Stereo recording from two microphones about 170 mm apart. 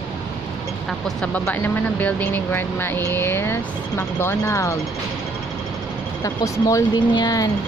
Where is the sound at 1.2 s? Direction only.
10° left (ahead or behind).